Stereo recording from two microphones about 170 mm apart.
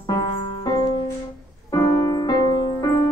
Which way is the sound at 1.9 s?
20° left (ahead or behind).